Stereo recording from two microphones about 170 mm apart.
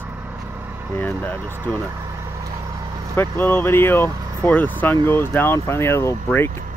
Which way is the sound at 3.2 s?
15° left (ahead or behind).